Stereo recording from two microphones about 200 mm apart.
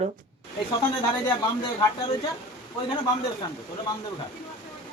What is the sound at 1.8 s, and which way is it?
Speech, 25° left (ahead or behind).